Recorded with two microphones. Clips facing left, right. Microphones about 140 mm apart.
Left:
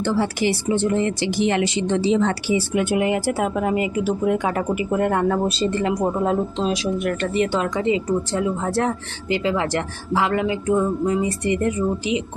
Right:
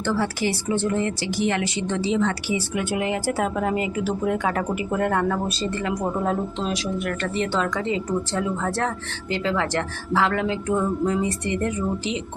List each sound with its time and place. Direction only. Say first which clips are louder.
0.0 s speech: left 3 dB; 20° left (ahead or behind)
2.8 s a woman's voice: left 4 dB; 15° left (ahead or behind)
5.3 s a woman's voice: left 5 dB; 25° left (ahead or behind); by 11.7 s 10° left (ahead or behind)